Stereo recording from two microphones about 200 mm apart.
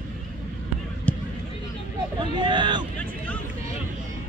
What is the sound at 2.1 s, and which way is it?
Hubbub, 25° right (ahead or behind).